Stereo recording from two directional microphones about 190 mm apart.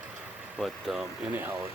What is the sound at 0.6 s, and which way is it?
Speech, centre (ahead or behind).